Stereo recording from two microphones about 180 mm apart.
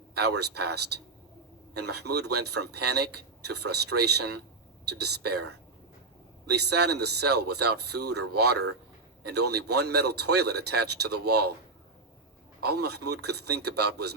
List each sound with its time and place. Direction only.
0.1 s speech: 65° right (ahead or behind)
12.6 s speech: 65° right (ahead or behind)